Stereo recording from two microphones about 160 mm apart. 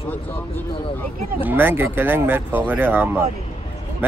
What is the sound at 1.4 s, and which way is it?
Speech, 15° right (ahead or behind).